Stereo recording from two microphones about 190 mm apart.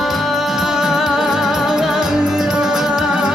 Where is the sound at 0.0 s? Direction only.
Centre (ahead or behind).